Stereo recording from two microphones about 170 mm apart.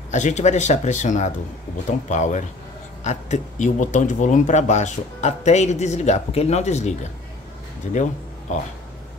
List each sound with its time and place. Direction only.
0.1 s speech: 45° left (ahead or behind)